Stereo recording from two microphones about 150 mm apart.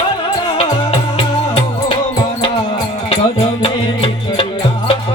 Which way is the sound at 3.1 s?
40° left (ahead or behind).